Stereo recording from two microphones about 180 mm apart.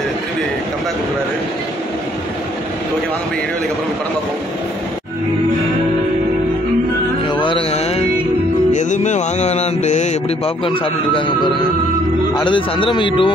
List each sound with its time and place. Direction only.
7.2 s music: 25° left (ahead or behind)
8.7 s mantra: 40° left (ahead or behind)
12.4 s a man's voice: 25° left (ahead or behind)